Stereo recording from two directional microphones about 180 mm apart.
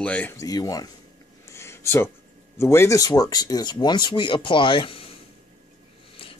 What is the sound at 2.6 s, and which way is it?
Speech, 15° left (ahead or behind).